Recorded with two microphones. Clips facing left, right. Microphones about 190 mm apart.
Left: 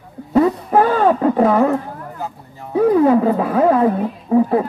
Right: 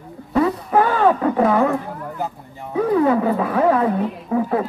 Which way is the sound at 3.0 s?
35° left (ahead or behind).